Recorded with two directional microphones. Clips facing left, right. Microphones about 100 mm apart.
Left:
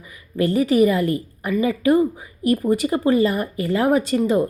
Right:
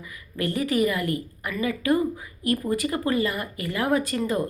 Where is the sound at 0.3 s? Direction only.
25° left (ahead or behind).